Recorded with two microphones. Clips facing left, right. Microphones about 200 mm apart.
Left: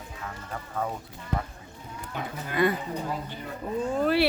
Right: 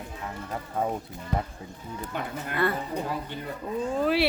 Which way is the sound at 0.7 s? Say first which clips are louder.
Right 3 dB; 25° right (ahead or behind).